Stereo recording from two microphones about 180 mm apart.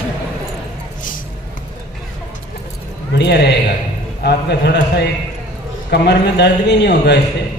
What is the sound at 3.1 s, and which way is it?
A man's voice, 70° left (ahead or behind).